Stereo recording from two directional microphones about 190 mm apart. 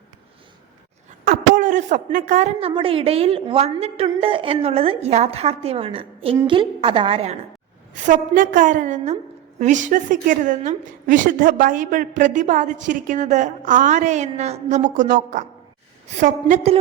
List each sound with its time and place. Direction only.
1.2 s a woman's voice: 45° right (ahead or behind)
7.9 s a woman's voice: 40° right (ahead or behind)